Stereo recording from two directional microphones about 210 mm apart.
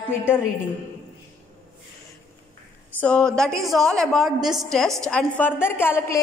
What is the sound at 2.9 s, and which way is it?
A woman's voice, 5° left (ahead or behind).